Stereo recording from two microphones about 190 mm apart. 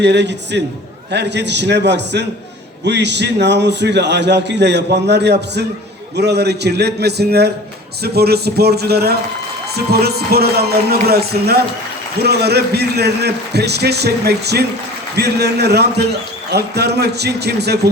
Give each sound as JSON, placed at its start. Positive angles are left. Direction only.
{"t": 0.0, "sound": "a man's voice", "side_deg": -65}